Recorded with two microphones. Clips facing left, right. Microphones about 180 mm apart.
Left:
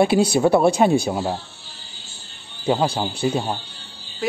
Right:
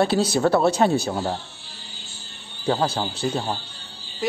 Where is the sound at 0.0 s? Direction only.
10° left (ahead or behind).